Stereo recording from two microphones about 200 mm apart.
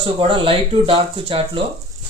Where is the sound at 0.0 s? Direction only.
25° right (ahead or behind).